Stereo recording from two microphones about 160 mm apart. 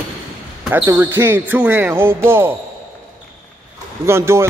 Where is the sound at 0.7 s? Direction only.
15° right (ahead or behind).